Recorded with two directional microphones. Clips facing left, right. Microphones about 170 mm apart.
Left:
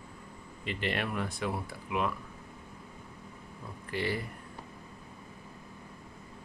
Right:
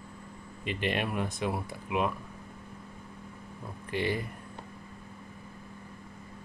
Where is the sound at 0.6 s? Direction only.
20° right (ahead or behind).